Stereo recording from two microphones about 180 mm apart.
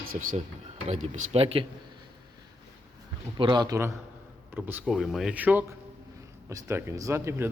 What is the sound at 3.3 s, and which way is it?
Speech, 25° right (ahead or behind).